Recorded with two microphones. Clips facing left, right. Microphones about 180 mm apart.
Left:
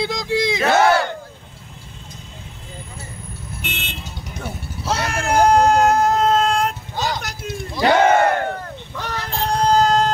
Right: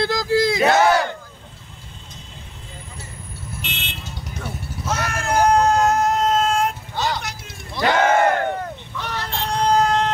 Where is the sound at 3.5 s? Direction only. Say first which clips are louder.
Left 2 dB; 55° left (ahead or behind).